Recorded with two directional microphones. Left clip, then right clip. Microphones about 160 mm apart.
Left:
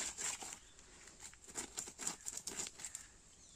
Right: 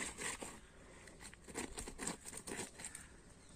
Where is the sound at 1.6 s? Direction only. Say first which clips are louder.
Right 1 dB; 15° left (ahead or behind).